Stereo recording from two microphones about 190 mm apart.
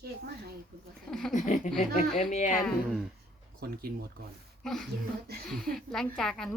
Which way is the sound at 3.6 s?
50° right (ahead or behind).